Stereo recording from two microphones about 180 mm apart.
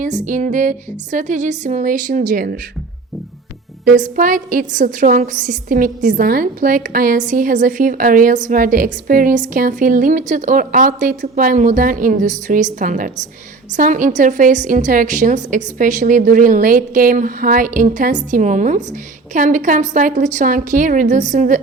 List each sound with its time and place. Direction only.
0.0 s a woman's voice: 45° right (ahead or behind)
3.8 s a woman's voice: 45° right (ahead or behind)